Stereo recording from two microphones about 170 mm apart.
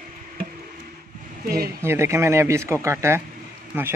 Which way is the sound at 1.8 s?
15° right (ahead or behind).